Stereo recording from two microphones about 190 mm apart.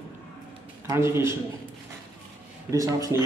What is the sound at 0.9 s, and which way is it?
Speech, 15° right (ahead or behind).